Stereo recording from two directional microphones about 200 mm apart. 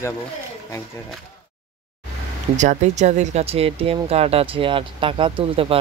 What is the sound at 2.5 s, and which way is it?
Speech, 35° right (ahead or behind).